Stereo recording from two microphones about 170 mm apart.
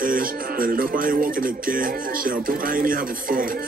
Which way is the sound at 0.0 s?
55° right (ahead or behind).